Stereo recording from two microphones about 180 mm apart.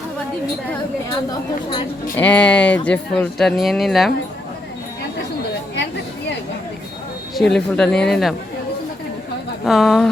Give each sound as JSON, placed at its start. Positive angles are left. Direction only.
{"t": 2.1, "sound": "speech", "side_deg": 10}
{"t": 7.3, "sound": "speech", "side_deg": 0}
{"t": 9.6, "sound": "speech", "side_deg": 0}